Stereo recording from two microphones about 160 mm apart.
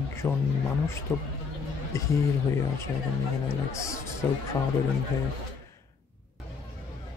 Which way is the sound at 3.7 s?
20° left (ahead or behind).